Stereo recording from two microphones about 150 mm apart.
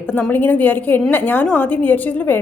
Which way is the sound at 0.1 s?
10° left (ahead or behind).